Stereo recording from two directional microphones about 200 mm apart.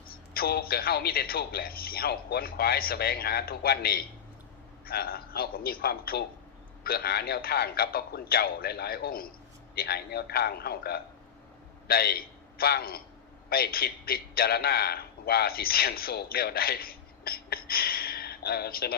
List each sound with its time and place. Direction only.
0.3 s a man's voice: 50° left (ahead or behind)